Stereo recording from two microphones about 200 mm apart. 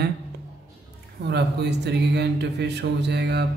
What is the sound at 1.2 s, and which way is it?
Speech, 55° right (ahead or behind).